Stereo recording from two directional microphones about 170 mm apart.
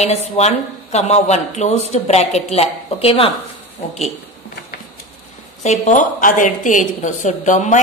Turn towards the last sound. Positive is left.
turn(degrees=45)  # may be behind; listen again after turning